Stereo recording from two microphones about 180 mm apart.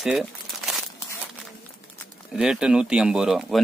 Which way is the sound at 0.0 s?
Centre (ahead or behind).